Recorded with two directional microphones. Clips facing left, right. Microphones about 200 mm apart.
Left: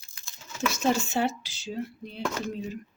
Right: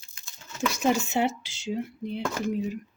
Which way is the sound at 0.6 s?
15° right (ahead or behind).